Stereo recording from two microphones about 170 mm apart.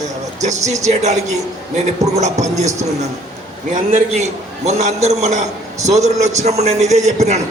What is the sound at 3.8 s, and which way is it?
A man's voice, 45° right (ahead or behind).